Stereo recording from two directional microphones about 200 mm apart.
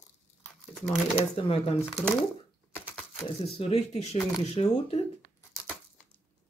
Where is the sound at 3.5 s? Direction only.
30° left (ahead or behind).